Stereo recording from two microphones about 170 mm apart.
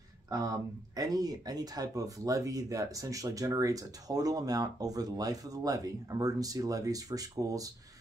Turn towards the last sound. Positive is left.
turn(degrees=-20)  # may be behind; listen again after turning